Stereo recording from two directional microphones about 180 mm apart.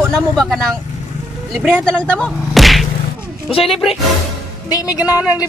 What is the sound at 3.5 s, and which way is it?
Speech, 30° left (ahead or behind).